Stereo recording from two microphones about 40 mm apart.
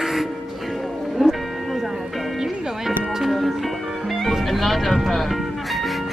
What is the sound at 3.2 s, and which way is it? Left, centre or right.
Music, centre.